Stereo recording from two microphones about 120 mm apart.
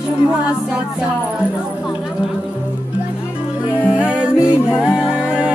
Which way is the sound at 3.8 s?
10° right (ahead or behind).